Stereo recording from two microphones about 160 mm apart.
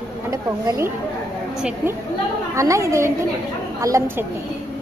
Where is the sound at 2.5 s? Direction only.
20° right (ahead or behind).